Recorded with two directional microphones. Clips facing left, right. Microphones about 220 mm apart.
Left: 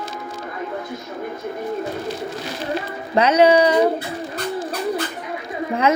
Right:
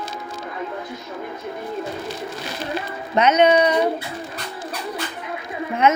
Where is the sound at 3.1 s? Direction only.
30° left (ahead or behind).